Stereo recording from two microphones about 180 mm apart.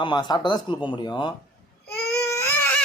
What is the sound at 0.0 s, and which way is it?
Speech, 25° left (ahead or behind).